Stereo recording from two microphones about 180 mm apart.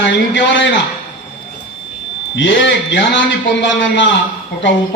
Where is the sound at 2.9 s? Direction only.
90° left.